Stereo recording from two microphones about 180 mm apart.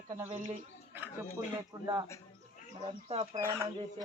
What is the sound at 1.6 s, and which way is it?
Speech, 20° right (ahead or behind).